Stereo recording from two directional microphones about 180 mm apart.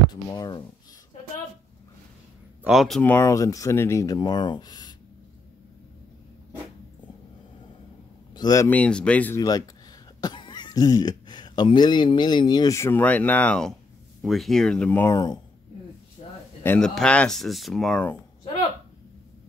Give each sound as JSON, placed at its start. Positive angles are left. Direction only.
{"t": 0.3, "sound": "speech", "side_deg": 20}
{"t": 2.6, "sound": "speech", "side_deg": 0}
{"t": 3.0, "sound": "speech", "side_deg": 10}
{"t": 8.4, "sound": "speech", "side_deg": 20}
{"t": 8.6, "sound": "speech", "side_deg": 5}
{"t": 9.4, "sound": "speech", "side_deg": 20}
{"t": 16.2, "sound": "a sound", "side_deg": 35}
{"t": 16.6, "sound": "speech", "side_deg": 5}